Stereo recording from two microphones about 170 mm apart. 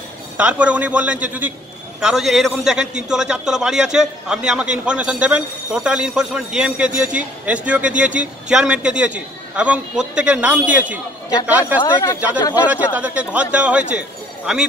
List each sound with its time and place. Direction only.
0.4 s a man's voice: 5° right (ahead or behind)
11.8 s speech: 25° left (ahead or behind)
12.7 s speech: 10° right (ahead or behind)